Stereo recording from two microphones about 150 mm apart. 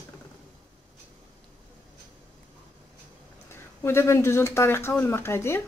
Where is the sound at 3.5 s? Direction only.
15° left (ahead or behind).